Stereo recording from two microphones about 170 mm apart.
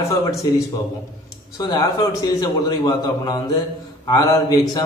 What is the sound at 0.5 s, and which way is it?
Speech, 20° left (ahead or behind).